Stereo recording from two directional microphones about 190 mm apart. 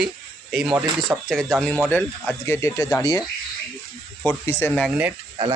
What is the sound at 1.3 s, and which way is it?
Speech, centre (ahead or behind).